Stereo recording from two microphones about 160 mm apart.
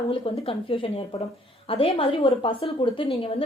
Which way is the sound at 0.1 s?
35° left (ahead or behind).